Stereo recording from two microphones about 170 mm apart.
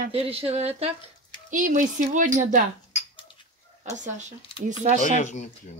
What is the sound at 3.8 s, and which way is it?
Speech, 45° right (ahead or behind).